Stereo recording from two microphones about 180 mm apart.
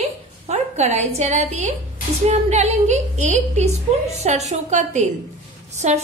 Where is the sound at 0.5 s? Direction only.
40° right (ahead or behind).